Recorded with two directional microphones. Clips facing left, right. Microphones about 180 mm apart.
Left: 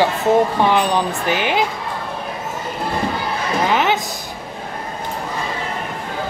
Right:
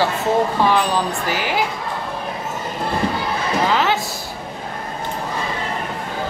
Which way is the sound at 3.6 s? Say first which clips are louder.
Left 2 dB; 20° left (ahead or behind).